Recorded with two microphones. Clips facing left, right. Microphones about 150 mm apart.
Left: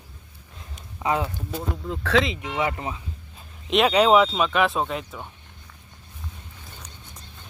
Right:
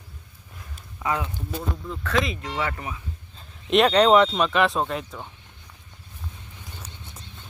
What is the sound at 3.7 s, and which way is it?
Speech, 5° left (ahead or behind).